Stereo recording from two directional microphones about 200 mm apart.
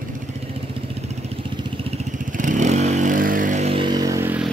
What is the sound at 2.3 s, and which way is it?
Vehicle, 40° right (ahead or behind).